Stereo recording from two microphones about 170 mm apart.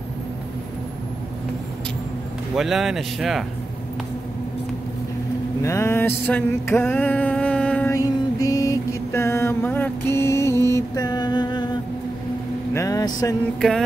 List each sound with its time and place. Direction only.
2.5 s speech: centre (ahead or behind)
5.6 s a sound: 15° left (ahead or behind)
7.9 s mantra: 20° left (ahead or behind)
12.7 s vehicle: 20° left (ahead or behind)
13.6 s speech: centre (ahead or behind)